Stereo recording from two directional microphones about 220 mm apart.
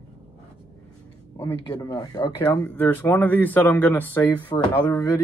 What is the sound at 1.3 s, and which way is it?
Speech, 15° left (ahead or behind).